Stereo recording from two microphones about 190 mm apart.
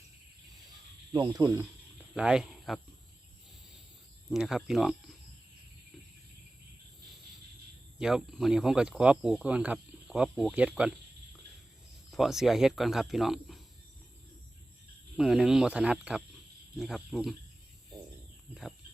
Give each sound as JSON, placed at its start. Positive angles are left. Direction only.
{"t": 1.1, "sound": "speech", "side_deg": -20}
{"t": 2.1, "sound": "speech", "side_deg": -5}
{"t": 4.3, "sound": "speech", "side_deg": 0}
{"t": 7.9, "sound": "speech", "side_deg": 0}
{"t": 12.1, "sound": "speech", "side_deg": 0}
{"t": 15.1, "sound": "speech", "side_deg": 0}